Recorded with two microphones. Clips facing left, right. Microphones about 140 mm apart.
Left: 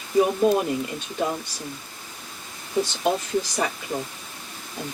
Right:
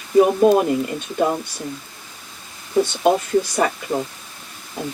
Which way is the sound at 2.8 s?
60° right (ahead or behind).